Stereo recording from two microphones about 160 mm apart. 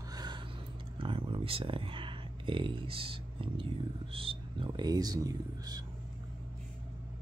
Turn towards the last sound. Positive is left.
turn(degrees=-25)  # may be behind; listen again after turning